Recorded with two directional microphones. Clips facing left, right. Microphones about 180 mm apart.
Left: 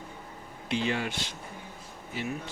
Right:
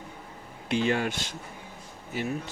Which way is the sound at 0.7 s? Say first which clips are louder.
Right 4 dB; 50° right (ahead or behind).